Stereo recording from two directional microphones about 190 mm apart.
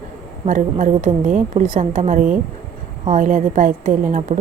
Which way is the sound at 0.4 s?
40° right (ahead or behind).